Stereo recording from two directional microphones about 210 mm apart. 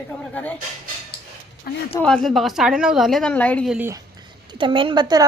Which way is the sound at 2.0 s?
5° left (ahead or behind).